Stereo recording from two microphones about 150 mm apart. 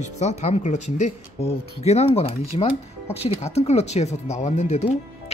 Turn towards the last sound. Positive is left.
turn(degrees=45)  # may be behind; listen again after turning